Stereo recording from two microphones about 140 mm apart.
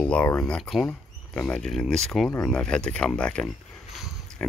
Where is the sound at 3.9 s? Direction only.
Centre (ahead or behind).